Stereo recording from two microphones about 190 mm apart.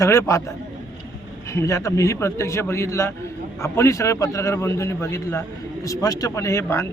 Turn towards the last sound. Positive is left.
turn(degrees=15)  # may be behind; listen again after turning